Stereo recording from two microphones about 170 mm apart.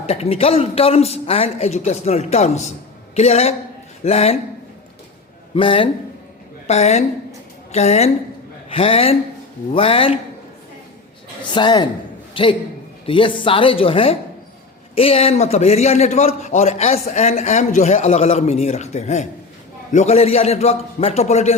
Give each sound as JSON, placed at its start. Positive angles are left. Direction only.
{"t": 0.0, "sound": "a man's voice", "side_deg": 35}
{"t": 5.5, "sound": "a man's voice", "side_deg": 30}
{"t": 6.7, "sound": "a man's voice", "side_deg": 40}
{"t": 11.5, "sound": "a woman's voice", "side_deg": 25}